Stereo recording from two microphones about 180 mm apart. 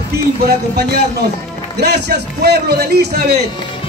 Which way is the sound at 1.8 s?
65° right (ahead or behind).